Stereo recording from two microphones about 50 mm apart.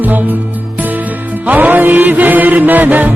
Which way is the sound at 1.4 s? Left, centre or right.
Right.